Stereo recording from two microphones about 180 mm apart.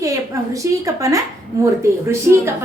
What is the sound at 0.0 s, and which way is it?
A woman's voice, 20° right (ahead or behind).